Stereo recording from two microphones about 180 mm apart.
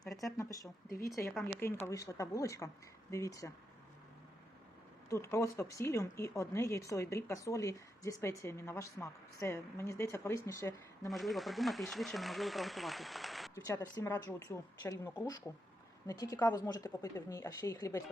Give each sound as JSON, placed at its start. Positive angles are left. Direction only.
{"t": 0.0, "sound": "speech", "side_deg": 0}
{"t": 0.3, "sound": "a woman's voice", "side_deg": 20}
{"t": 1.9, "sound": "speech", "side_deg": 20}
{"t": 5.0, "sound": "speech", "side_deg": 15}
{"t": 11.1, "sound": "speech", "side_deg": 0}
{"t": 13.7, "sound": "a woman's voice", "side_deg": 20}